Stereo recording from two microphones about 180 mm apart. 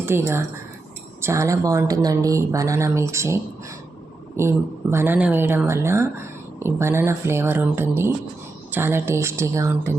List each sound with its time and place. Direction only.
0.0 s speech: 15° right (ahead or behind)